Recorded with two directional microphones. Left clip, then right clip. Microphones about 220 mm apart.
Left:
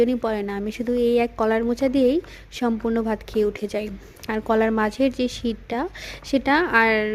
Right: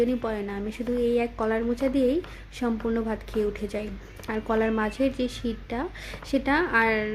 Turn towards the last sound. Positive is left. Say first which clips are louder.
# left 5 dB
turn(degrees=40)  # may be behind; listen again after turning